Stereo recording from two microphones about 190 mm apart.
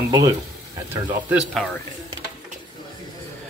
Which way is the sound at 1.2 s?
5° right (ahead or behind).